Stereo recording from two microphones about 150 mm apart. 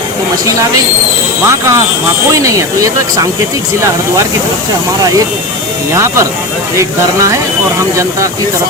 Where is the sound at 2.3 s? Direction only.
20° right (ahead or behind).